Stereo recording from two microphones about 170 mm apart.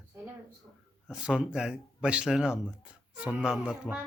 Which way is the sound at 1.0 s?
5° right (ahead or behind).